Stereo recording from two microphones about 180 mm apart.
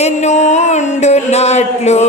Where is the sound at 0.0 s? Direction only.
40° left (ahead or behind).